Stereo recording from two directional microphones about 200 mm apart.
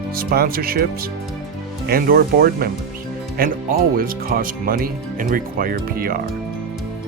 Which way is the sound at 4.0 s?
45° right (ahead or behind).